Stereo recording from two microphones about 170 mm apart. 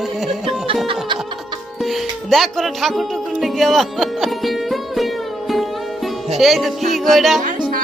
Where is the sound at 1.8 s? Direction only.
Centre (ahead or behind).